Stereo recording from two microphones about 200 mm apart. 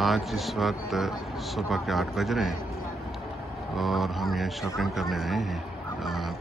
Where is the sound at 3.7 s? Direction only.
Centre (ahead or behind).